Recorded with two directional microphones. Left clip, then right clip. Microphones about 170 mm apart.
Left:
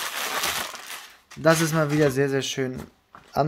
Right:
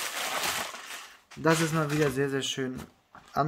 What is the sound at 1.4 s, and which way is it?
Speech, 45° left (ahead or behind).